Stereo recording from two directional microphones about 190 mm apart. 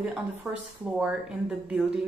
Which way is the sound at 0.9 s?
5° right (ahead or behind).